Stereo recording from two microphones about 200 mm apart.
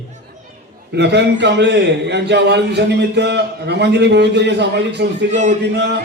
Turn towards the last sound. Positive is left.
turn(degrees=-60)  # may be behind; listen again after turning